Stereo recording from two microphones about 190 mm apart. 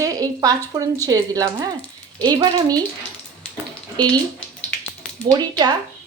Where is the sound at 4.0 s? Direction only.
20° right (ahead or behind).